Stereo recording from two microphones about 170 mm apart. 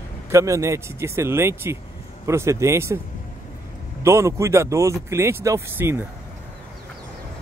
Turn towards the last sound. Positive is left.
turn(degrees=-15)  # may be behind; listen again after turning